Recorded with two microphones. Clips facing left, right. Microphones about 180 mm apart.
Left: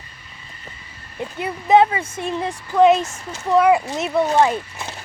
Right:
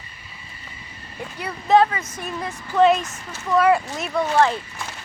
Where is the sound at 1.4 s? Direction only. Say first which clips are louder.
Left 2 dB; 20° left (ahead or behind).